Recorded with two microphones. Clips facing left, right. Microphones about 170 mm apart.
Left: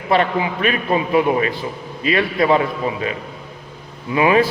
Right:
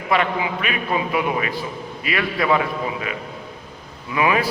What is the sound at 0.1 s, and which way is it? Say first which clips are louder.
A man's voice: left 3 dB; 40° left (ahead or behind).